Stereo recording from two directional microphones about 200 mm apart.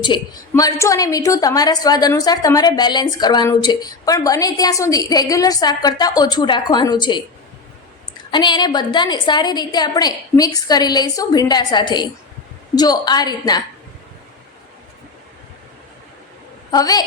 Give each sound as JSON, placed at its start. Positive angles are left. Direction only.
{"t": 0.0, "sound": "a woman's voice", "side_deg": 20}
{"t": 8.3, "sound": "a woman's voice", "side_deg": 20}
{"t": 16.7, "sound": "a woman's voice", "side_deg": 20}